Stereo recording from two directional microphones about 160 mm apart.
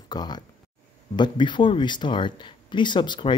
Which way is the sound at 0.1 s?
25° left (ahead or behind).